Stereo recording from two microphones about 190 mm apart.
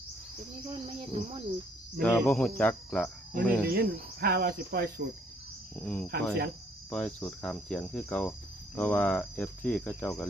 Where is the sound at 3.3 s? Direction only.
50° right (ahead or behind).